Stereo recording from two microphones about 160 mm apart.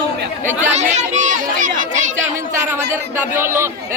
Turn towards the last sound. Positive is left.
turn(degrees=-15)  # may be behind; listen again after turning